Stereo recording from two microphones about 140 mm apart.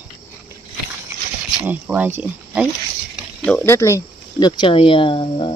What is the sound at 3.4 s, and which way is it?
Speech, 15° left (ahead or behind).